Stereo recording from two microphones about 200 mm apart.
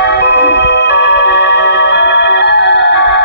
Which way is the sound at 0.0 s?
55° left (ahead or behind).